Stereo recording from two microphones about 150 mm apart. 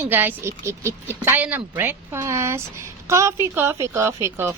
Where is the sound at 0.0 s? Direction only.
10° right (ahead or behind).